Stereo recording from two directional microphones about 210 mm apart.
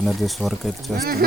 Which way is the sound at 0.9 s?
45° right (ahead or behind).